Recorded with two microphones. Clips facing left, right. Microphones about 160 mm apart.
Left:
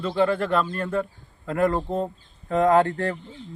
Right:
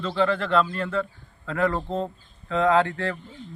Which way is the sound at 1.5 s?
45° left (ahead or behind).